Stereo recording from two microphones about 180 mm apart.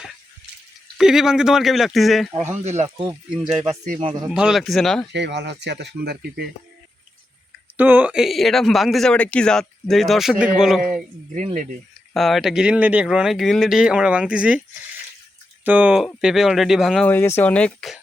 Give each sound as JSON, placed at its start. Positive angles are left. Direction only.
{"t": 0.9, "sound": "speech", "side_deg": -5}
{"t": 2.3, "sound": "speech", "side_deg": -10}
{"t": 2.6, "sound": "speech", "side_deg": -40}
{"t": 4.0, "sound": "speech", "side_deg": -25}
{"t": 4.3, "sound": "speech", "side_deg": -5}
{"t": 5.1, "sound": "speech", "side_deg": -70}
{"t": 7.8, "sound": "speech", "side_deg": -10}
{"t": 11.3, "sound": "speech", "side_deg": -40}
{"t": 12.1, "sound": "speech", "side_deg": 0}
{"t": 15.6, "sound": "speech", "side_deg": -10}
{"t": 17.1, "sound": "speech", "side_deg": 10}